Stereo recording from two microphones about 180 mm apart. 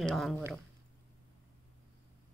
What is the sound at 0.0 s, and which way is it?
Speech, centre (ahead or behind).